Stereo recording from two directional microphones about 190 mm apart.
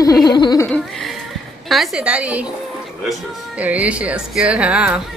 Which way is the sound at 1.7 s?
5° right (ahead or behind).